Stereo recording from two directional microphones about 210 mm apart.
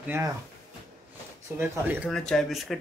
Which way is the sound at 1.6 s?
10° right (ahead or behind).